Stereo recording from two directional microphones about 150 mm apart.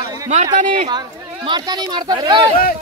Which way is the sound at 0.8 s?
30° right (ahead or behind).